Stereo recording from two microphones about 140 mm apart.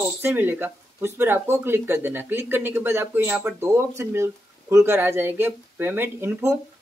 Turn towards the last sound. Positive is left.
turn(degrees=-15)  # may be behind; listen again after turning